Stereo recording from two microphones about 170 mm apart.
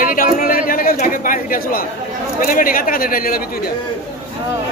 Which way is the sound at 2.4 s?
55° left (ahead or behind).